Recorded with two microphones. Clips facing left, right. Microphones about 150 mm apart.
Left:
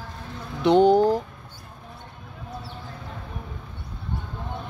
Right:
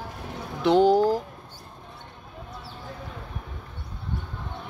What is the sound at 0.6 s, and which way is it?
Speech, 5° right (ahead or behind).